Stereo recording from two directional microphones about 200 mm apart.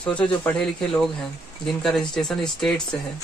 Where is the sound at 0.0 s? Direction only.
5° left (ahead or behind).